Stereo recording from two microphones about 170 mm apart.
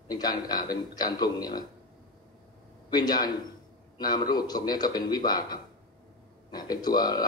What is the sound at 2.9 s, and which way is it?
A man's voice, 25° left (ahead or behind).